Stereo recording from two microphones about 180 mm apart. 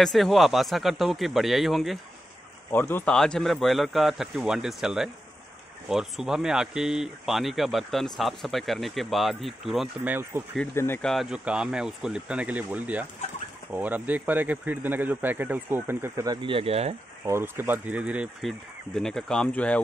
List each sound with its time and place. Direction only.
0.0 s speech: centre (ahead or behind)
2.7 s speech: 10° left (ahead or behind)
10.0 s speech: 10° right (ahead or behind)
10.7 s speech: 15° left (ahead or behind)
11.1 s speech: centre (ahead or behind)
16.3 s speech: 30° right (ahead or behind)
17.2 s speech: 15° right (ahead or behind); by 19.8 s 5° left (ahead or behind)